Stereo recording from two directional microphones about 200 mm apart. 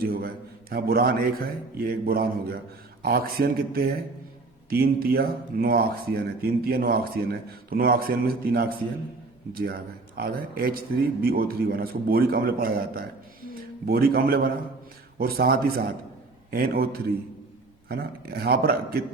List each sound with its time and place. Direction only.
0.0 s a man's voice: 45° right (ahead or behind)